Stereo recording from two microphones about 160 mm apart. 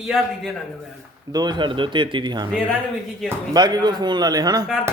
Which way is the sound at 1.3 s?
25° right (ahead or behind).